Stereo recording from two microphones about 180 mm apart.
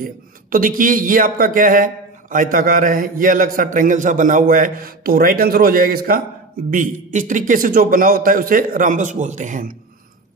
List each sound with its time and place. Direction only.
0.0 s speech: 50° right (ahead or behind)
6.7 s speech: 45° right (ahead or behind)